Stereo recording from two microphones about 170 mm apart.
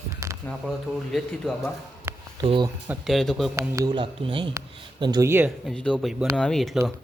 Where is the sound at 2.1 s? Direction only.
15° right (ahead or behind).